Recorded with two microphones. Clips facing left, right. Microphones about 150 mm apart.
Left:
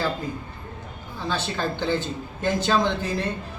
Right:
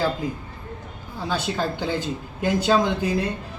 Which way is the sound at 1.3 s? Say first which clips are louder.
Right 2 dB; 10° right (ahead or behind).